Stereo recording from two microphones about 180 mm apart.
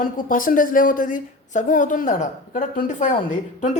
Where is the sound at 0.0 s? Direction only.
50° left (ahead or behind).